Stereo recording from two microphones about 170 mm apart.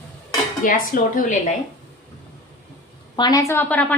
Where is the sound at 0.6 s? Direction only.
50° left (ahead or behind).